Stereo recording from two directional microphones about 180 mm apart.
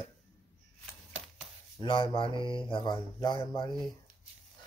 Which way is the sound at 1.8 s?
30° left (ahead or behind).